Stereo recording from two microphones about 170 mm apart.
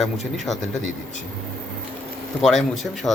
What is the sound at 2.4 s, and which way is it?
Speech, centre (ahead or behind).